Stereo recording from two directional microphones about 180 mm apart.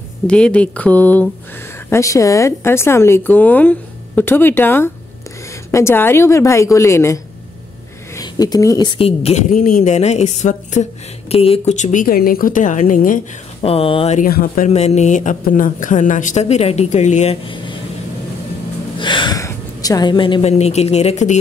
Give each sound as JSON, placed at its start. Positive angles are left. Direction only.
{"t": 0.3, "sound": "speech", "side_deg": 5}
{"t": 8.2, "sound": "a woman's voice", "side_deg": 20}
{"t": 13.6, "sound": "a woman's voice", "side_deg": 30}
{"t": 14.2, "sound": "speech", "side_deg": 50}
{"t": 14.7, "sound": "a woman's voice", "side_deg": 35}
{"t": 18.9, "sound": "a woman's voice", "side_deg": 25}